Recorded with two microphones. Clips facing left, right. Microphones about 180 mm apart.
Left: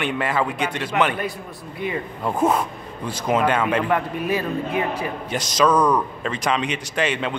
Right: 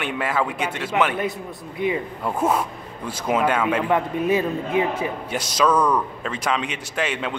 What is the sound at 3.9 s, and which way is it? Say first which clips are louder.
Speech: right 2 dB; 20° right (ahead or behind).